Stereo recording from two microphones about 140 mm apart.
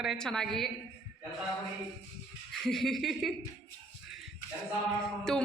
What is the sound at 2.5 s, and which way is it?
Speech, centre (ahead or behind).